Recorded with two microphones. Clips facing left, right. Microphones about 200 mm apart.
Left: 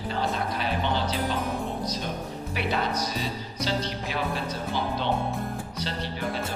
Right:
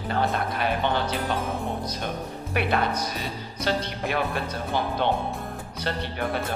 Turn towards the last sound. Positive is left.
turn(degrees=-55)  # may be behind; listen again after turning